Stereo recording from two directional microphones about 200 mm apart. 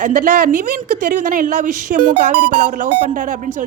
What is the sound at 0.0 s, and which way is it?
A woman's voice, 40° right (ahead or behind).